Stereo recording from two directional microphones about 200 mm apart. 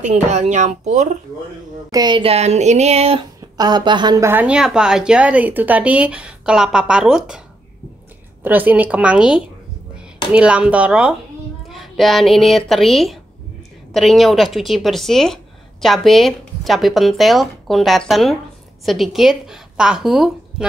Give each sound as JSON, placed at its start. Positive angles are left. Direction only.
{"t": 0.0, "sound": "speech", "side_deg": -35}
{"t": 1.9, "sound": "a woman's voice", "side_deg": -20}